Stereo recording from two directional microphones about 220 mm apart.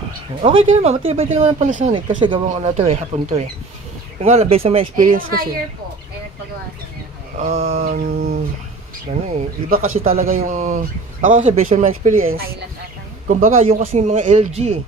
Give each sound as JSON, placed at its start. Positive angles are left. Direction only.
{"t": 0.4, "sound": "speech", "side_deg": -25}
{"t": 2.0, "sound": "speech", "side_deg": -20}
{"t": 7.3, "sound": "speech", "side_deg": -30}
{"t": 9.1, "sound": "speech", "side_deg": -30}
{"t": 12.3, "sound": "speech", "side_deg": -45}